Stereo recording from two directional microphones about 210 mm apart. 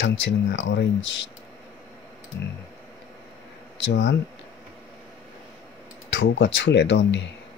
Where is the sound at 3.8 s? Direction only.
55° left (ahead or behind).